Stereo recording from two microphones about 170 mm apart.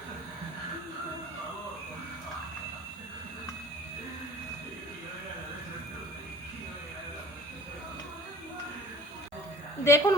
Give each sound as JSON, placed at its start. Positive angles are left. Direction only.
{"t": 9.8, "sound": "speech", "side_deg": 15}